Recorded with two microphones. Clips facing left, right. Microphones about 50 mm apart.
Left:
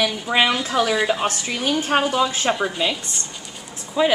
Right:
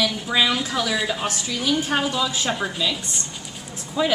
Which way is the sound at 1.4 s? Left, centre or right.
Left.